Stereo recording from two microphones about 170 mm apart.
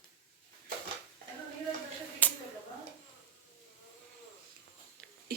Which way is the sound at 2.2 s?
10° left (ahead or behind).